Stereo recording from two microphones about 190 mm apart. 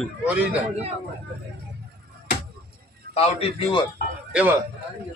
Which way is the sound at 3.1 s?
30° left (ahead or behind).